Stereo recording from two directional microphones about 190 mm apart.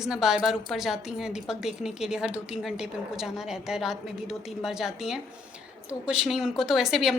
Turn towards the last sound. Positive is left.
turn(degrees=0)  # may be behind; listen again after turning